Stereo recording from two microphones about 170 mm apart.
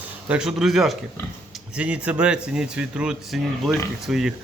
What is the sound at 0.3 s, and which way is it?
Speech, 5° right (ahead or behind).